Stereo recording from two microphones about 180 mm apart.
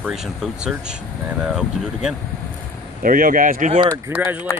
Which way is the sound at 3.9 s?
15° right (ahead or behind).